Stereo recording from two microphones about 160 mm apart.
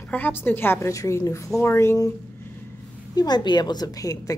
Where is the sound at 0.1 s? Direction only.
10° left (ahead or behind).